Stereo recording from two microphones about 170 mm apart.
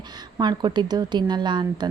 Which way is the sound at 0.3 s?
25° right (ahead or behind).